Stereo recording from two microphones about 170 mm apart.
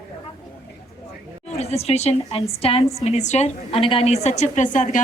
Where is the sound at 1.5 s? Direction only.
40° left (ahead or behind).